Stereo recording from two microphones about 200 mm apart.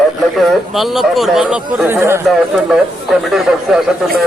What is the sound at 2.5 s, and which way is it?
A man's voice, centre (ahead or behind).